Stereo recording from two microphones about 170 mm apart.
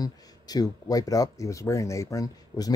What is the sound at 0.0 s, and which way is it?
Speech, 20° left (ahead or behind).